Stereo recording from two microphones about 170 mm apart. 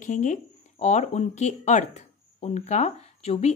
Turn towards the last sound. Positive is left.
turn(degrees=35)  # may be behind; listen again after turning